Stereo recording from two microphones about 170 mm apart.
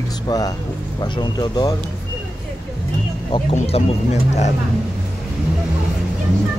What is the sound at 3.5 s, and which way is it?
Speech, 40° left (ahead or behind).